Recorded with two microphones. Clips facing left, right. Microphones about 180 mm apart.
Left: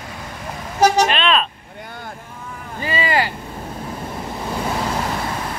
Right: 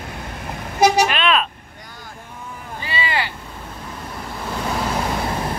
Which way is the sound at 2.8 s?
40° left (ahead or behind).